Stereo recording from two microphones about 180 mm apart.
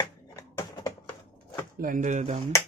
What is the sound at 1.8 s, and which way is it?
Speech, 45° right (ahead or behind).